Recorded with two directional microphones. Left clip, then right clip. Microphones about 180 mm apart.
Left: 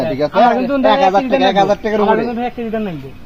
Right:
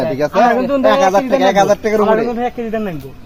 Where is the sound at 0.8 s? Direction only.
Centre (ahead or behind).